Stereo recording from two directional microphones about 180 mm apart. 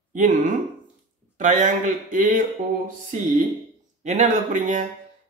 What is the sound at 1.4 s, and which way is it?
Speech, 45° right (ahead or behind).